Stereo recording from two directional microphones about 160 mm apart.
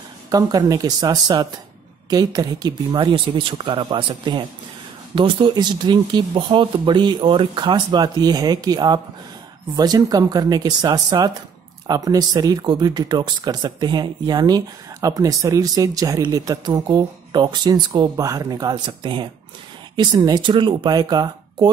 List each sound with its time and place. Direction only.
0.3 s speech: 20° right (ahead or behind)